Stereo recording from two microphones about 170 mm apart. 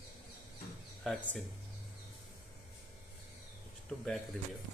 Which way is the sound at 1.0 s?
5° left (ahead or behind).